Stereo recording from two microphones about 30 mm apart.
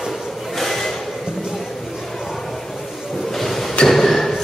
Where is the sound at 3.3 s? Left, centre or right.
Centre.